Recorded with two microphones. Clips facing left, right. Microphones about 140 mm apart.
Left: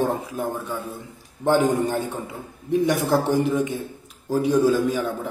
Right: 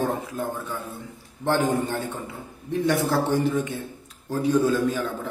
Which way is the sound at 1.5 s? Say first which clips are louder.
Left 4 dB; 15° left (ahead or behind).